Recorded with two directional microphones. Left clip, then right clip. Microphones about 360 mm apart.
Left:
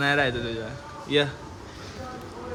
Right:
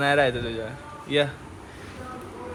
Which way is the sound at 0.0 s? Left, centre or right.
Centre.